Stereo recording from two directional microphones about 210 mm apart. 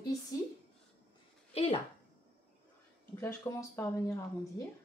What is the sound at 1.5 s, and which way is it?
Speech, 30° left (ahead or behind).